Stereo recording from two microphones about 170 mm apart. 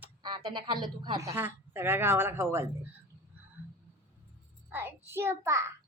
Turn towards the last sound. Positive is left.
turn(degrees=-15)  # may be behind; listen again after turning